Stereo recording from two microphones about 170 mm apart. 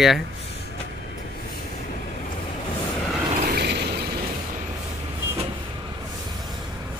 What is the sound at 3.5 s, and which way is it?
Mechanisms, 75° right (ahead or behind).